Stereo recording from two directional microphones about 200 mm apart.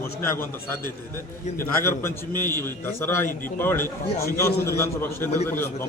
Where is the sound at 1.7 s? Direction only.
10° left (ahead or behind).